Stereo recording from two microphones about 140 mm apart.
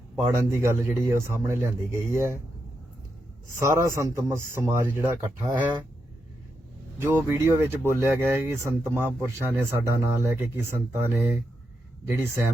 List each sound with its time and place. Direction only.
0.2 s speech: 20° right (ahead or behind)
3.6 s speech: 20° right (ahead or behind)
7.0 s speech: 15° right (ahead or behind)